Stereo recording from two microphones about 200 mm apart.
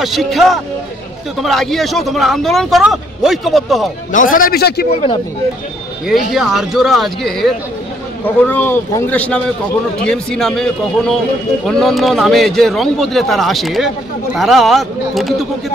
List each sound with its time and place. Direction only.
0.0 s speech: centre (ahead or behind)
4.1 s a man's voice: 45° left (ahead or behind)
6.0 s speech: centre (ahead or behind)